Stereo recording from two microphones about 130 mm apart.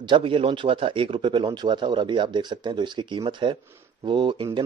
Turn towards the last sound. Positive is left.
turn(degrees=-40)  # may be behind; listen again after turning